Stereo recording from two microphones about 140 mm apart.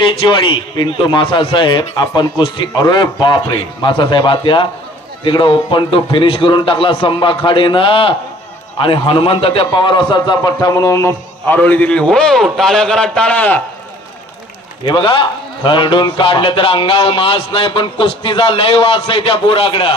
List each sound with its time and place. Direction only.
0.0 s a man's voice: 35° left (ahead or behind); by 13.6 s 10° left (ahead or behind)
14.8 s speech: 35° left (ahead or behind)